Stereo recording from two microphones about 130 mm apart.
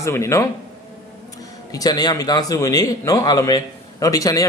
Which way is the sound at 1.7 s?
30° left (ahead or behind).